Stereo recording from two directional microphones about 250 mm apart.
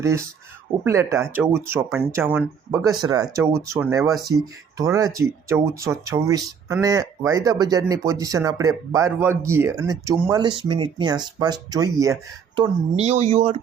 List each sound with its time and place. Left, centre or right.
0.0 s speech: centre
12.5 s speech: right